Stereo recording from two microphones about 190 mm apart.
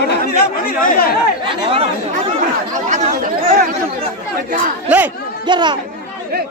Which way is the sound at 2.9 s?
40° right (ahead or behind).